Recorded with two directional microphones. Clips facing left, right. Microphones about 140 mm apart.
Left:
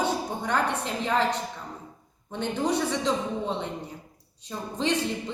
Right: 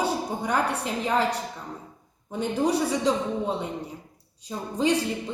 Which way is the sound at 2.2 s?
10° right (ahead or behind).